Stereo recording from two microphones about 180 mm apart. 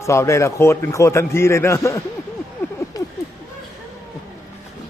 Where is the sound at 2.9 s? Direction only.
20° left (ahead or behind).